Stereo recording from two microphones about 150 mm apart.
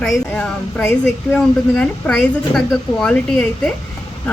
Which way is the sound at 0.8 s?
15° left (ahead or behind).